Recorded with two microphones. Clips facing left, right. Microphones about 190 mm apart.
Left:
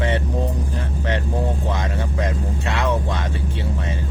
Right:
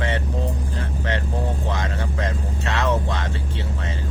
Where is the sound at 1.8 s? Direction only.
15° left (ahead or behind).